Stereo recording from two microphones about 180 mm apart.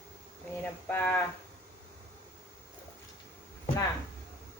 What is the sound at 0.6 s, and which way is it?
Speech, 10° left (ahead or behind).